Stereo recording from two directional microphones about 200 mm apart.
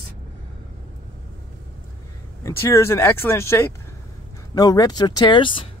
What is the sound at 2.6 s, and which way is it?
Speech, 15° left (ahead or behind).